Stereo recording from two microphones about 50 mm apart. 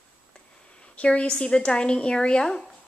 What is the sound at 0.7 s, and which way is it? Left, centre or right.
A woman's voice, left.